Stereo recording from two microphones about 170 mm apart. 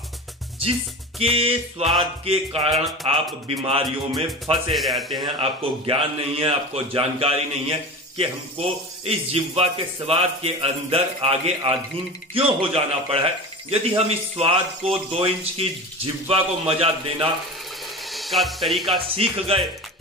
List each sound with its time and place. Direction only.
1.2 s speech: 35° right (ahead or behind)
4.7 s a man's voice: centre (ahead or behind)
5.2 s speech: 35° right (ahead or behind)
18.0 s speech: centre (ahead or behind)
18.9 s speech: 30° right (ahead or behind)